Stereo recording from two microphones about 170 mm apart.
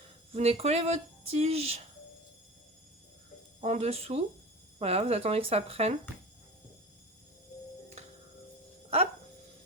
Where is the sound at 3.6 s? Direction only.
40° right (ahead or behind).